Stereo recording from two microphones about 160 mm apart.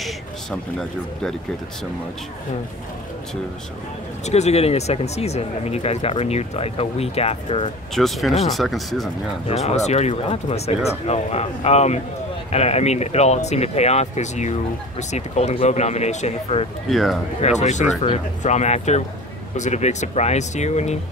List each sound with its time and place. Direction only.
0.0 s speech: 5° left (ahead or behind)
4.3 s speech: 40° left (ahead or behind)
7.9 s speech: centre (ahead or behind)
9.5 s speech: 40° left (ahead or behind)
16.9 s speech: centre (ahead or behind)
17.4 s speech: 45° left (ahead or behind)